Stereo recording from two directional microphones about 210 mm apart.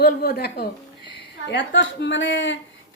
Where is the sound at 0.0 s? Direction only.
50° left (ahead or behind).